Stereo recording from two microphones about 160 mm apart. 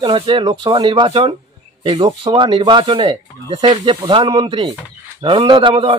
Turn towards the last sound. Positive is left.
turn(degrees=-30)  # may be behind; listen again after turning